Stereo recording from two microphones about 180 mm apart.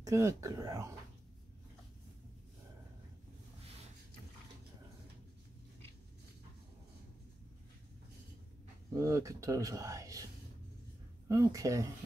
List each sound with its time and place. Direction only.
0.0 s speech: 15° right (ahead or behind)
8.9 s speech: 15° right (ahead or behind)
11.2 s speech: 15° right (ahead or behind)